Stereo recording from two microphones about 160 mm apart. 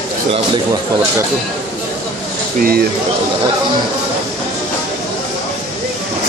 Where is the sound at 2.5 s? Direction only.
65° right (ahead or behind).